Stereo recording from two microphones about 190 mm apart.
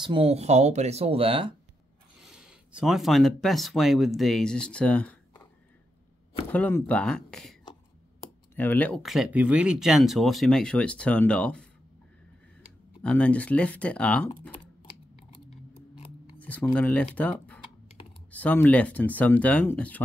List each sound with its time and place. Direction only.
0.0 s speech: 30° right (ahead or behind)
2.2 s speech: 5° right (ahead or behind)
6.5 s speech: 10° left (ahead or behind)
8.5 s speech: 10° left (ahead or behind)
13.0 s speech: 5° left (ahead or behind)
16.3 s speech: 10° left (ahead or behind)